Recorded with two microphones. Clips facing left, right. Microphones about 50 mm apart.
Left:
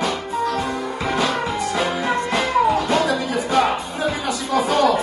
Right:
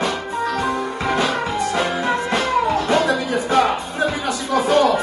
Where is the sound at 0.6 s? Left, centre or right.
Centre.